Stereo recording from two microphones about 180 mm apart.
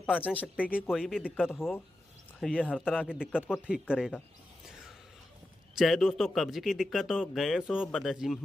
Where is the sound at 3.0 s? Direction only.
5° right (ahead or behind).